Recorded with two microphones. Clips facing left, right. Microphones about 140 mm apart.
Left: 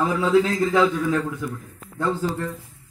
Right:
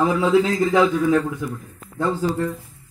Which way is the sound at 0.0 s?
15° right (ahead or behind).